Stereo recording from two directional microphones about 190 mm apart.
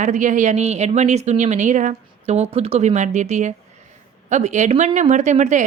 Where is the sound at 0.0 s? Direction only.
40° right (ahead or behind).